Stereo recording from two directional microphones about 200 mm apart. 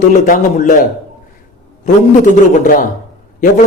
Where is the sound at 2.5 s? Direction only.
40° left (ahead or behind).